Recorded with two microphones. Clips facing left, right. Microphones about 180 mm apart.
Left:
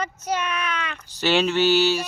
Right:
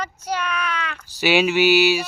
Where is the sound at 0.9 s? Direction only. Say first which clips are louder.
Right 2 dB; 10° right (ahead or behind).